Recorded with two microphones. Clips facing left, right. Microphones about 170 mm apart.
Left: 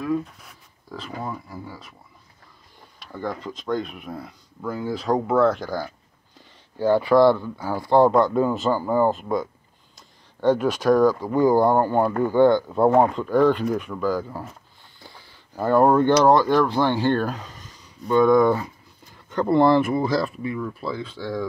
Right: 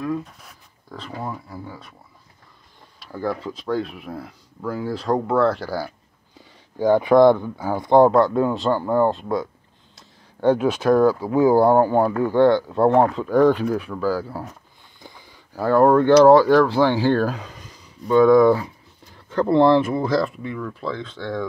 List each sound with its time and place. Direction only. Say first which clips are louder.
1.2 s speech: right 3 dB; centre (ahead or behind)
3.1 s speech: right 4 dB; 5° right (ahead or behind)
8.1 s speech: right 1 dB; centre (ahead or behind)
10.4 s speech: right 1 dB; 10° right (ahead or behind)
12.1 s speech: right 1 dB; centre (ahead or behind)
15.0 s a sound: right 2 dB; 15° right (ahead or behind)
15.6 s speech: right 2 dB; centre (ahead or behind)